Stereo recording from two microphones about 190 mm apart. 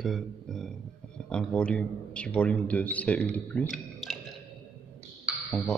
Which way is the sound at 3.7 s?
Centre (ahead or behind).